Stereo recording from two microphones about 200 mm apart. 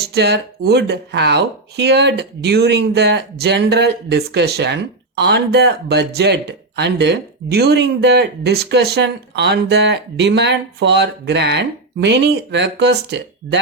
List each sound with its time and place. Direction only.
0.0 s speech: 55° right (ahead or behind)